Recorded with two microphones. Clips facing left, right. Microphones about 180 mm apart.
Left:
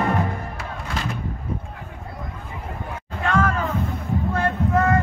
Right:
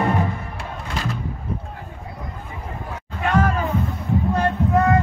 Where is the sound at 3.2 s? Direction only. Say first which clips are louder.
Right 1 dB; 20° right (ahead or behind).